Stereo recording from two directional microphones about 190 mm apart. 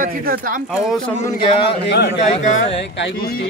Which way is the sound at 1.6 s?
60° left (ahead or behind).